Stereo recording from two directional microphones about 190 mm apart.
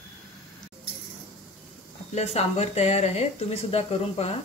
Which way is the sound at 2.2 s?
35° left (ahead or behind).